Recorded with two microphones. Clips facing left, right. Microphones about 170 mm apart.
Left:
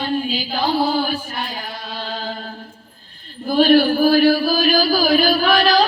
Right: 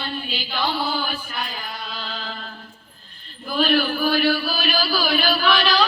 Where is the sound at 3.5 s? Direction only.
40° left (ahead or behind).